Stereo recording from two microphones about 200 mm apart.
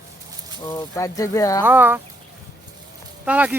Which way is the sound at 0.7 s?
15° left (ahead or behind).